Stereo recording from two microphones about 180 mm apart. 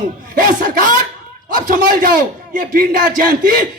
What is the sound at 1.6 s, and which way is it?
A man's voice, 50° right (ahead or behind).